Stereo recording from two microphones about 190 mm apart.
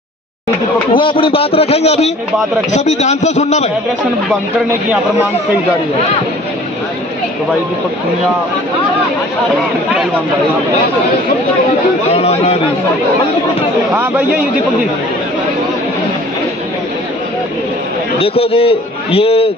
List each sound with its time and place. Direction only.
0.9 s a man's voice: 30° left (ahead or behind)
12.1 s a man's voice: 35° left (ahead or behind)
18.2 s a man's voice: 30° left (ahead or behind)